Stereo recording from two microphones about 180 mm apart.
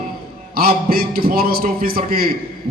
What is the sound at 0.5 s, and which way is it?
A man's voice, 55° right (ahead or behind).